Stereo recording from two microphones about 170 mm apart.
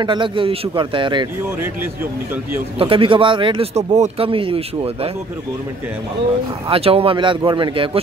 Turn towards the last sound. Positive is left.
turn(degrees=-30)  # may be behind; listen again after turning